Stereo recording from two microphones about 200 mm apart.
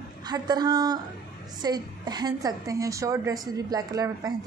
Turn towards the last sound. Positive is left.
turn(degrees=-15)  # may be behind; listen again after turning